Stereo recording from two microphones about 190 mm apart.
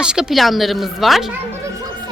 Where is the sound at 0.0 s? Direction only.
5° right (ahead or behind).